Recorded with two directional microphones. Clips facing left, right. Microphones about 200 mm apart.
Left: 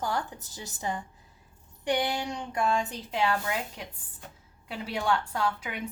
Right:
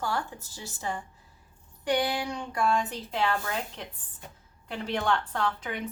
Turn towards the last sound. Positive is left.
turn(degrees=10)  # may be behind; listen again after turning